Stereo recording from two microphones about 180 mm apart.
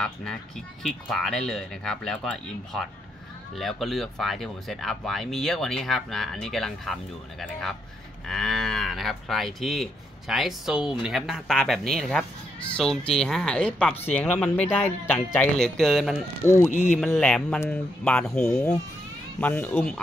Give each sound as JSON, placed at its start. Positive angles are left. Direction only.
{"t": 0.0, "sound": "speech", "side_deg": 5}
{"t": 16.7, "sound": "speech", "side_deg": 45}
{"t": 17.0, "sound": "speech", "side_deg": 5}